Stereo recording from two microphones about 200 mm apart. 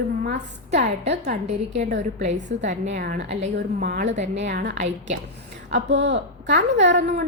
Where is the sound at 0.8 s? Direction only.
60° right (ahead or behind).